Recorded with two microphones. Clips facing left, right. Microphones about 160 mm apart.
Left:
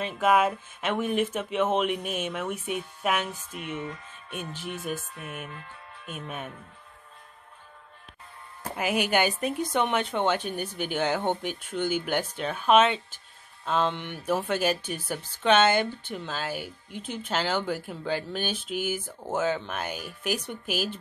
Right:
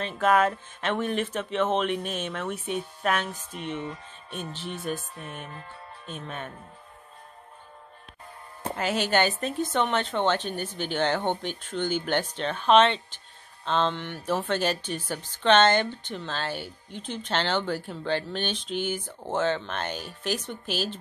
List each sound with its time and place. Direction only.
0.0 s speech: 10° left (ahead or behind)
4.9 s music: 30° right (ahead or behind)
6.1 s speech: 10° left (ahead or behind)
8.7 s speech: 10° left (ahead or behind)